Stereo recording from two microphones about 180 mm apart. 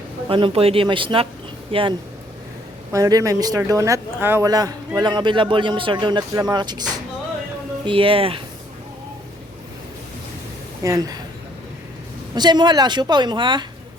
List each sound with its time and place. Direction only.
0.3 s speech: 30° right (ahead or behind)
7.9 s speech: 30° right (ahead or behind)
10.8 s speech: 20° right (ahead or behind)
12.3 s speech: 25° right (ahead or behind)